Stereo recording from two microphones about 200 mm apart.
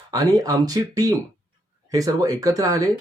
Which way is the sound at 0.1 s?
20° right (ahead or behind).